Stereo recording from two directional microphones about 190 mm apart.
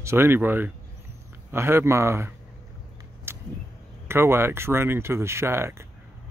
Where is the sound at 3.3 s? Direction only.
10° right (ahead or behind).